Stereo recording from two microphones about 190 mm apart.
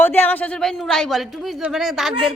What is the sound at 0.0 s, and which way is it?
Speech, 10° left (ahead or behind).